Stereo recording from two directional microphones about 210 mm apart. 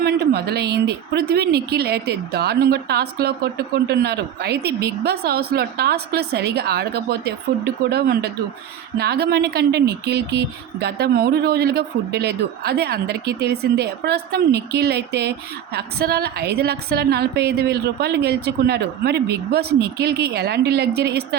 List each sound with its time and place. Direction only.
0.0 s speech: 50° right (ahead or behind)